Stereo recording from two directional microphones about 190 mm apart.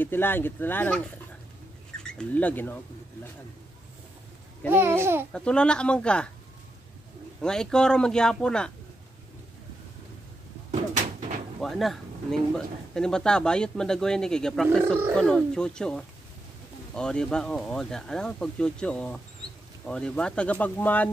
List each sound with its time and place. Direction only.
0.0 s speech: 10° left (ahead or behind)
4.6 s babbling: 10° right (ahead or behind)
5.3 s speech: 5° left (ahead or behind)
7.4 s speech: 5° left (ahead or behind)
10.7 s cupboard open or close: 35° right (ahead or behind)
11.6 s speech: centre (ahead or behind)